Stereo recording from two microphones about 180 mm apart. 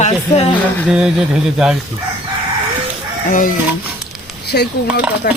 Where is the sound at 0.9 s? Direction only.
5° right (ahead or behind).